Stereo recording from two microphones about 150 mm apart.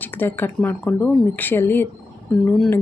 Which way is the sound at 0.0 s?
15° left (ahead or behind).